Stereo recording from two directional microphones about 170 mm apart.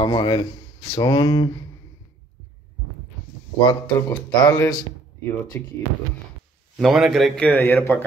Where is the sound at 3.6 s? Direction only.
25° left (ahead or behind).